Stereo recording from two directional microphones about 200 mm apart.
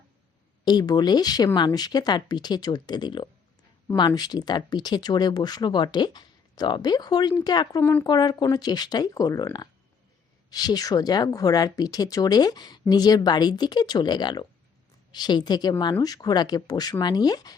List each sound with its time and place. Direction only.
0.6 s speech: 20° left (ahead or behind)